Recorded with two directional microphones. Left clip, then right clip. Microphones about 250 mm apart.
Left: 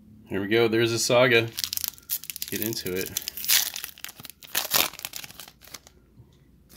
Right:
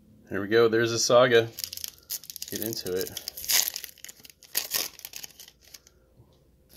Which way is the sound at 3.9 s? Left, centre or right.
Centre.